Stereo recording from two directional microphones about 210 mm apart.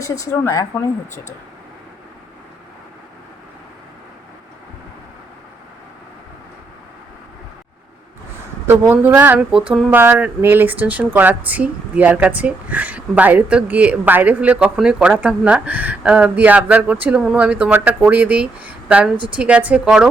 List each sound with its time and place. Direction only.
0.0 s speech: 15° left (ahead or behind)
8.6 s a woman's voice: 10° right (ahead or behind)